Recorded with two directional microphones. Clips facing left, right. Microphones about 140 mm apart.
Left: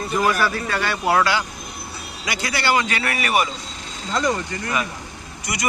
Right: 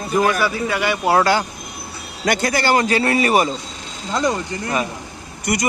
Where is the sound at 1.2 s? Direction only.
45° right (ahead or behind).